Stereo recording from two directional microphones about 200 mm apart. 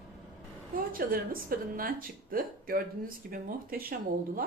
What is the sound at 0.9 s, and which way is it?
Speech, 45° right (ahead or behind).